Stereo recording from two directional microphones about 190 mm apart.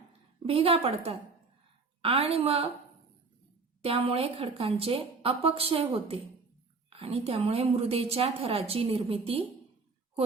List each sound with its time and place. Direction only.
0.4 s a woman's voice: 30° right (ahead or behind)
2.0 s a woman's voice: 30° right (ahead or behind)
3.8 s a woman's voice: 30° right (ahead or behind)